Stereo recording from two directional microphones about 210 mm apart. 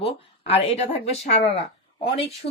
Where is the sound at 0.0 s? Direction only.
30° left (ahead or behind).